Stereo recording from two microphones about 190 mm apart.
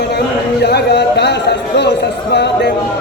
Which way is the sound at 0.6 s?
60° left (ahead or behind).